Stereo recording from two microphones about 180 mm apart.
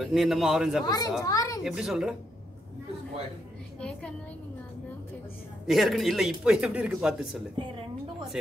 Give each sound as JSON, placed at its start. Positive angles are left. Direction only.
{"t": 0.0, "sound": "a man's voice", "side_deg": 0}
{"t": 0.8, "sound": "a child's voice", "side_deg": 20}
{"t": 1.6, "sound": "a man's voice", "side_deg": -5}
{"t": 5.7, "sound": "a man's voice", "side_deg": 0}